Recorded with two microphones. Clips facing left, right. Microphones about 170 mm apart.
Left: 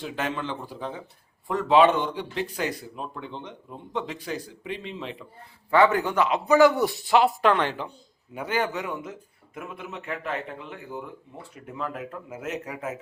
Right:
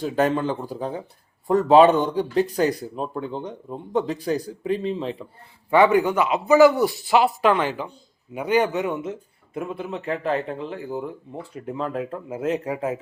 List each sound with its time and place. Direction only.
0.0 s speech: 40° right (ahead or behind)
5.7 s a man's voice: 20° right (ahead or behind)
8.4 s a man's voice: 15° right (ahead or behind)